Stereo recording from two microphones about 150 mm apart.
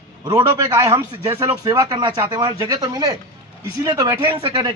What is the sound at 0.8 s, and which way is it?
A man's voice, 20° right (ahead or behind).